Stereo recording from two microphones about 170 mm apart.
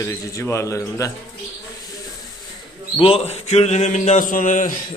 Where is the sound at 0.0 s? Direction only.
20° left (ahead or behind).